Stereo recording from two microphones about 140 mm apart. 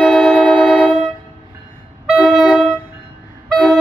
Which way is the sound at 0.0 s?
5° left (ahead or behind).